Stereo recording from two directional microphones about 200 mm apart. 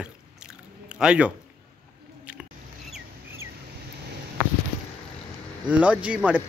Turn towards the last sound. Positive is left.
turn(degrees=-5)  # may be behind; listen again after turning